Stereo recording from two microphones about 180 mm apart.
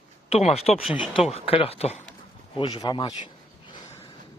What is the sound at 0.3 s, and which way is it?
Speech, 35° left (ahead or behind).